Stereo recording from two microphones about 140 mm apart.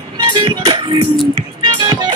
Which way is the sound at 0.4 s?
35° right (ahead or behind).